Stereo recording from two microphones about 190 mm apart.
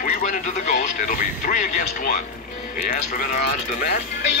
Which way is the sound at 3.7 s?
50° left (ahead or behind).